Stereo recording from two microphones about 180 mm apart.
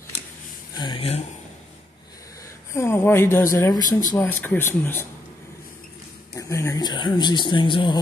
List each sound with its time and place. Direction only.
0.7 s speech: 25° left (ahead or behind)
2.7 s a woman's voice: 15° left (ahead or behind)
6.3 s speech: 15° left (ahead or behind)